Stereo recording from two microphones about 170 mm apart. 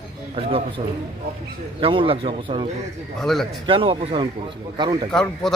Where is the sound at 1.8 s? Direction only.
30° right (ahead or behind).